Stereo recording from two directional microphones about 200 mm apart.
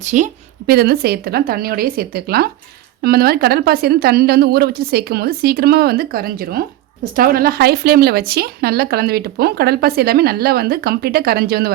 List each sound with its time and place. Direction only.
0.0 s a woman's voice: 35° right (ahead or behind)
0.7 s a woman's voice: 50° right (ahead or behind)